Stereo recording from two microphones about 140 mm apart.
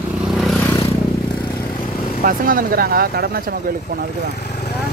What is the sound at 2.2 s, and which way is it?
Speech, 80° right.